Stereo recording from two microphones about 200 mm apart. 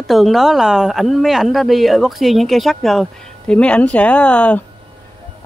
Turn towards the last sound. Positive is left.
turn(degrees=5)  # may be behind; listen again after turning